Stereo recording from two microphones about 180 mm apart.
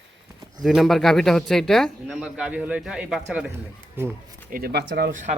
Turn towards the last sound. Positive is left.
turn(degrees=-45)  # may be behind; listen again after turning